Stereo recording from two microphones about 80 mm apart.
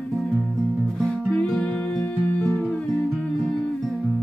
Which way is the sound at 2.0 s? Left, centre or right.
Left.